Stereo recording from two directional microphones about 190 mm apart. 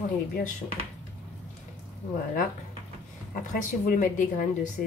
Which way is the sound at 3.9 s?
45° left (ahead or behind).